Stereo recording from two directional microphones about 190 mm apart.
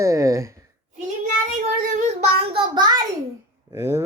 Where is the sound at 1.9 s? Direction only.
35° right (ahead or behind).